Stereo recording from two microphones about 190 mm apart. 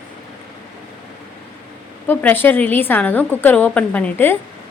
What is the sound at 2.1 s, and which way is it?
A woman's voice, 10° left (ahead or behind).